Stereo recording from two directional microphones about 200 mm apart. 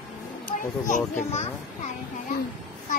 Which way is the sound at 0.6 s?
40° left (ahead or behind).